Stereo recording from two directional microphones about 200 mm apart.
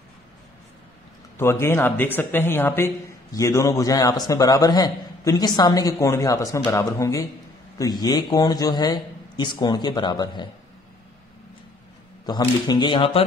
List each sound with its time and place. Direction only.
1.4 s a woman's voice: 15° left (ahead or behind)
12.3 s a man's voice: 20° left (ahead or behind)